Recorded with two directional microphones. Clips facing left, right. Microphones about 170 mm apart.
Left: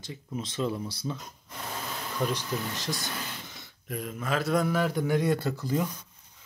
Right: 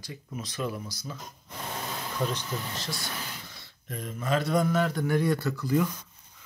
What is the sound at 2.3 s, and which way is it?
Speech, 15° left (ahead or behind).